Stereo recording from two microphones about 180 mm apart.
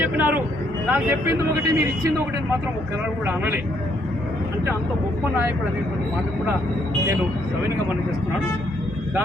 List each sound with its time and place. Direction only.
0.0 s speech: 10° right (ahead or behind)
3.2 s speech: 10° right (ahead or behind)